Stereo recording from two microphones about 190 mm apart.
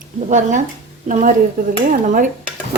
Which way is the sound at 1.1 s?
40° right (ahead or behind).